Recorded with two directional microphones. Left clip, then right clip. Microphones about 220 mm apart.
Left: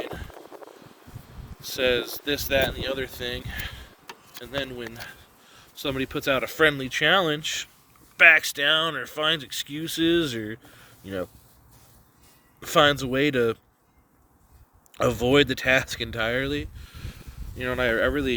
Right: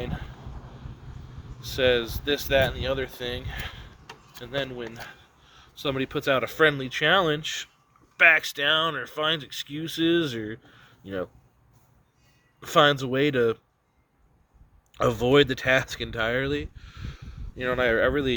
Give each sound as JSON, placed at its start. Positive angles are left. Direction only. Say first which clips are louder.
{"t": 0.0, "sound": "a sound", "louder": "left 1 dB", "side_deg": 50}
{"t": 1.6, "sound": "speech", "louder": "right 1 dB", "side_deg": 45}
{"t": 12.5, "sound": "speech", "louder": "even", "side_deg": 50}
{"t": 14.9, "sound": "speech", "louder": "even", "side_deg": 45}